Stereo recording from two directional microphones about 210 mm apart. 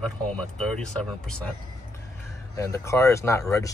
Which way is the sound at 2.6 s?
15° left (ahead or behind).